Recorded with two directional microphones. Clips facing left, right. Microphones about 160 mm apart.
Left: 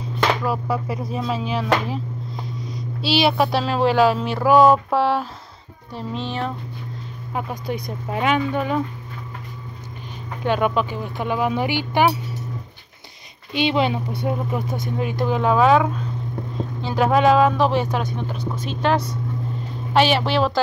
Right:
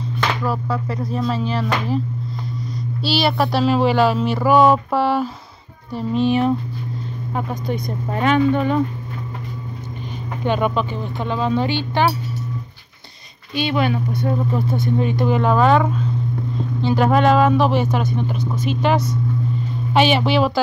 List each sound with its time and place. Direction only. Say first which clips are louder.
0.8 s speech: right 2 dB; 5° left (ahead or behind)
3.0 s speech: left 1 dB; centre (ahead or behind)
7.3 s speech: right 2 dB; 5° left (ahead or behind)
10.4 s speech: even; 5° left (ahead or behind)
13.5 s speech: even; 20° left (ahead or behind)
15.0 s speech: right 2 dB; 5° left (ahead or behind)